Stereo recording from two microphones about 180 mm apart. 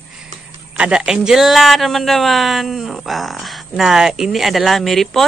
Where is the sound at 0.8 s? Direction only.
5° right (ahead or behind).